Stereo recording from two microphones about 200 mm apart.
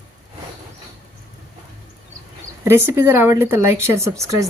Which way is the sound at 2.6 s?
10° right (ahead or behind).